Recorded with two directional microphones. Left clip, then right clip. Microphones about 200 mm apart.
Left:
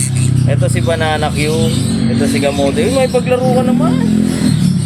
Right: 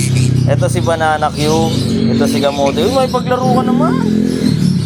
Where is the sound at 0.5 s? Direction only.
5° right (ahead or behind).